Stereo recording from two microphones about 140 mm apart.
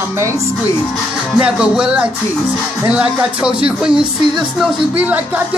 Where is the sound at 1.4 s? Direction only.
5° right (ahead or behind).